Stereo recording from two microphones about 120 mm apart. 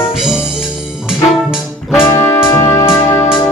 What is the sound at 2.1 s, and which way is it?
Music, 20° left (ahead or behind).